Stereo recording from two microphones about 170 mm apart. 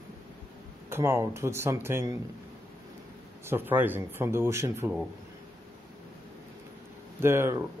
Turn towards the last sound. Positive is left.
turn(degrees=-15)  # may be behind; listen again after turning